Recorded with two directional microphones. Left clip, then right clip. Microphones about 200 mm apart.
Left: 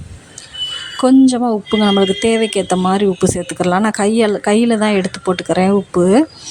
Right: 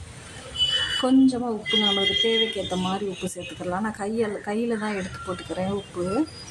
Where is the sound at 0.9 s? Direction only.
40° left (ahead or behind).